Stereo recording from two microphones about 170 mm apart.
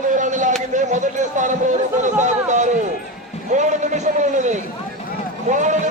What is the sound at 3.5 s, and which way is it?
A man's voice, 45° right (ahead or behind).